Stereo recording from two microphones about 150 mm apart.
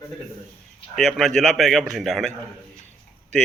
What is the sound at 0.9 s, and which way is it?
Speech, centre (ahead or behind).